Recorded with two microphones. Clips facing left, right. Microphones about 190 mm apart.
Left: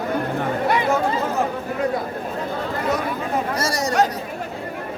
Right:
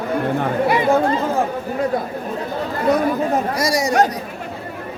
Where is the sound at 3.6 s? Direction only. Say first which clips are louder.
Right 3 dB; 10° right (ahead or behind).